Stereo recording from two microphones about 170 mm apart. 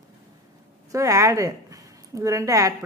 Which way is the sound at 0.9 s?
20° right (ahead or behind).